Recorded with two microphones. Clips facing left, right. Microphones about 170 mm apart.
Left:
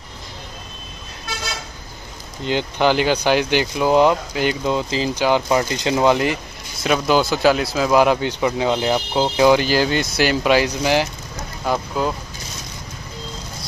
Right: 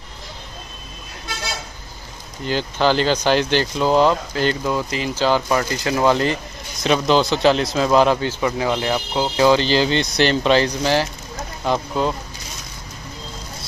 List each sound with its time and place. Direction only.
2.4 s speech: 15° left (ahead or behind)
5.1 s speech: 15° left (ahead or behind)
11.6 s speech: 5° left (ahead or behind)